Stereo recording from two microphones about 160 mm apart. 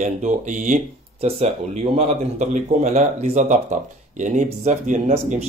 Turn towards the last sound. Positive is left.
turn(degrees=-50)  # may be behind; listen again after turning